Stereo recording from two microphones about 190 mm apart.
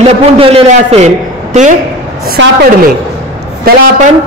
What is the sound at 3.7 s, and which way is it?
Speech, 50° right (ahead or behind).